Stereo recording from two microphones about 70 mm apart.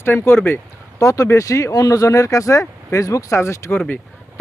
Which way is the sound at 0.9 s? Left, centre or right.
Left.